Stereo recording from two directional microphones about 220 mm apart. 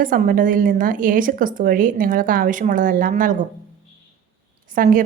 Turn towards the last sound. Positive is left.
turn(degrees=-40)  # may be behind; listen again after turning